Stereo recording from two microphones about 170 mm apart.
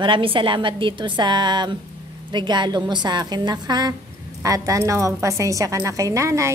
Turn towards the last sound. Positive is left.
turn(degrees=-15)  # may be behind; listen again after turning